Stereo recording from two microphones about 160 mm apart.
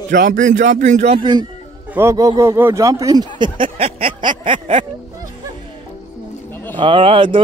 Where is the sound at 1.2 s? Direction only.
30° right (ahead or behind).